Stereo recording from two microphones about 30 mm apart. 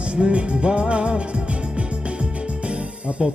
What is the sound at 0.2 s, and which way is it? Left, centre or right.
Music, right.